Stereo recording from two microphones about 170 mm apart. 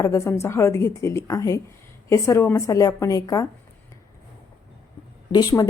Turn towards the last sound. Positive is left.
turn(degrees=20)  # may be behind; listen again after turning